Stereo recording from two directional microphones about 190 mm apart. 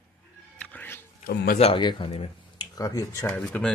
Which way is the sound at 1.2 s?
55° left (ahead or behind).